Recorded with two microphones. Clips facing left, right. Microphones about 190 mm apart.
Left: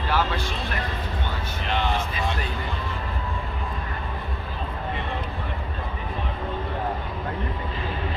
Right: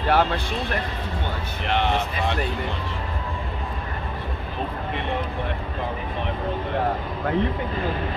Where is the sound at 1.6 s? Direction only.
65° right (ahead or behind).